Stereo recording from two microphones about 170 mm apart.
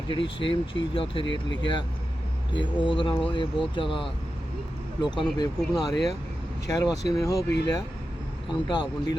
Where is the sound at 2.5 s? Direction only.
25° left (ahead or behind).